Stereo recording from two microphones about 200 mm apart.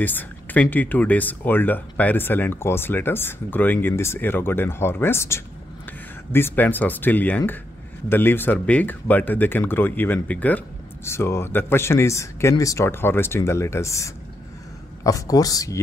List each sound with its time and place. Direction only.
0.0 s speech: 10° left (ahead or behind)